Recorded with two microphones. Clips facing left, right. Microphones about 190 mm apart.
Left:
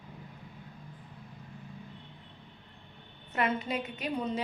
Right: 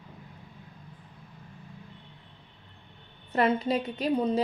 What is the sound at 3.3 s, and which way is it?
A woman's voice, 35° right (ahead or behind).